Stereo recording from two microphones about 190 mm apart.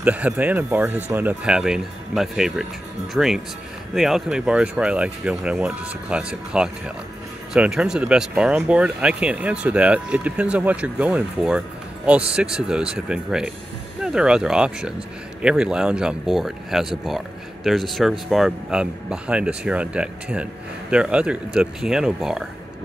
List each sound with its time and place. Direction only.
0.0 s speech: 10° right (ahead or behind)